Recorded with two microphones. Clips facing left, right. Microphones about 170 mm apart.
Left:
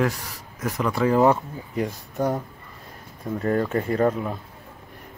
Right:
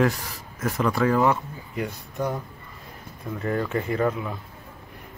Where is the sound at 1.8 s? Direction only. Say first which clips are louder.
Left 3 dB; 45° left (ahead or behind).